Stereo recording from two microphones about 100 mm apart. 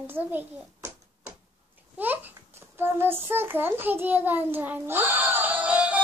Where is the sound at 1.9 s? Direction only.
20° right (ahead or behind).